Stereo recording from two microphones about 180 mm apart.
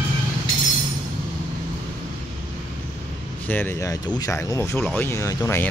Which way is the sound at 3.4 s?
10° left (ahead or behind).